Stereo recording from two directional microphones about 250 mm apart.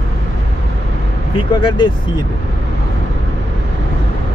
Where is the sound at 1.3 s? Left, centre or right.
Centre.